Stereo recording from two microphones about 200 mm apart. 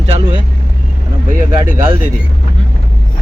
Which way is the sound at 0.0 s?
25° right (ahead or behind).